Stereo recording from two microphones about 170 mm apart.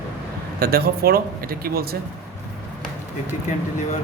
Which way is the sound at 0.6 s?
65° right (ahead or behind).